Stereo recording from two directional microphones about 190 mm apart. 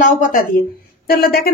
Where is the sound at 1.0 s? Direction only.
55° left (ahead or behind).